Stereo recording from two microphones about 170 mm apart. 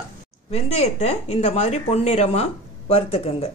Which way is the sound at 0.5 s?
40° left (ahead or behind).